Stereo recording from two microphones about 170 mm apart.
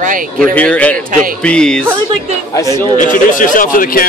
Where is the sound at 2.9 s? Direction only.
50° left (ahead or behind).